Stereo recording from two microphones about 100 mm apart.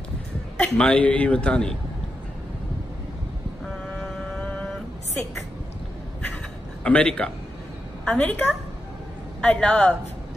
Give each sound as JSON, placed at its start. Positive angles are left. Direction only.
{"t": 0.6, "sound": "a man's voice", "side_deg": 10}
{"t": 3.6, "sound": "vehicle", "side_deg": 10}
{"t": 6.8, "sound": "a man's voice", "side_deg": 10}